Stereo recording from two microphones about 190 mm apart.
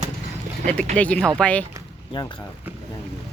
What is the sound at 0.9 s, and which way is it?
Speech, 5° left (ahead or behind).